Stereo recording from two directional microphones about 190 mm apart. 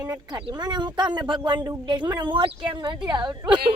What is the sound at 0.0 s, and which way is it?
Speech, 20° right (ahead or behind).